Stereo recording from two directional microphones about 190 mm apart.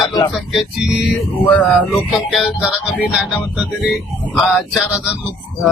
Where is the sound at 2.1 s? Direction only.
5° right (ahead or behind).